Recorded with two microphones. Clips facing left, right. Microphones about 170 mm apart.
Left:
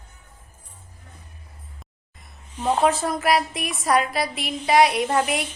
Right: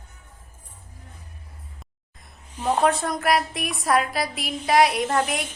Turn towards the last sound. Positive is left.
turn(degrees=5)  # may be behind; listen again after turning